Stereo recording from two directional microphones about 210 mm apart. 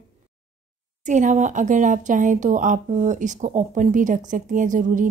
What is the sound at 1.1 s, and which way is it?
Speech, 35° right (ahead or behind).